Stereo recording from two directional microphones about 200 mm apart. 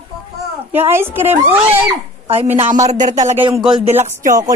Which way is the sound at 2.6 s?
35° right (ahead or behind).